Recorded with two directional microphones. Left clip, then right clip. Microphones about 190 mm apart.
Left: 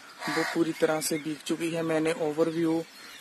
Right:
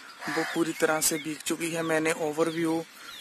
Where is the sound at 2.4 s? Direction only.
20° right (ahead or behind).